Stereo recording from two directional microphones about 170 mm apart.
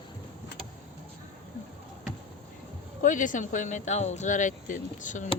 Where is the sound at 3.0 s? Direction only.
50° left (ahead or behind).